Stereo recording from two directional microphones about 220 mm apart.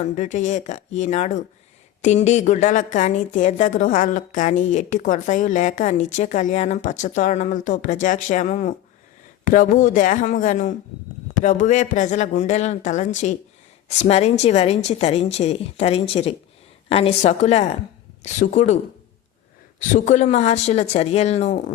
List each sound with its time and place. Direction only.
0.0 s a woman's voice: 35° left (ahead or behind)
19.9 s a woman's voice: 35° left (ahead or behind)